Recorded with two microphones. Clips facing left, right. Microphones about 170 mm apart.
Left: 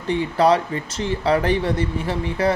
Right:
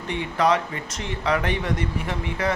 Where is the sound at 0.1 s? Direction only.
35° left (ahead or behind).